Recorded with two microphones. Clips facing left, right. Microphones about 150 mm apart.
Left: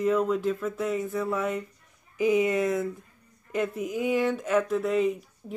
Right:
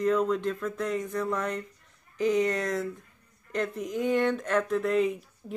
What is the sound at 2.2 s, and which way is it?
Speech, 10° left (ahead or behind).